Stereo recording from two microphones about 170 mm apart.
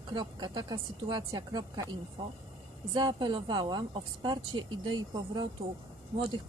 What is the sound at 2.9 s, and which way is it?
Speech, 25° right (ahead or behind).